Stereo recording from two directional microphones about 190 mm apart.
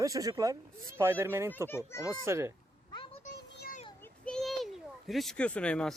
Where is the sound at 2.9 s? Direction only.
25° left (ahead or behind).